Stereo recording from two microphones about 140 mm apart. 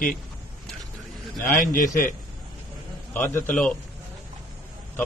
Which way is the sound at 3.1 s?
15° left (ahead or behind).